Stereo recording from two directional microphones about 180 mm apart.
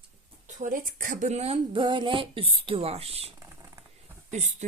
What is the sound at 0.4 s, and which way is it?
Speech, 45° right (ahead or behind).